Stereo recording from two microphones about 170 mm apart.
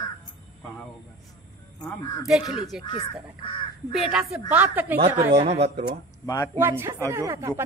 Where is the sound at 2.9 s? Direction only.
30° left (ahead or behind).